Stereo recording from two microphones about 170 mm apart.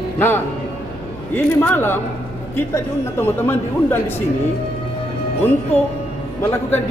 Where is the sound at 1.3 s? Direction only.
10° left (ahead or behind).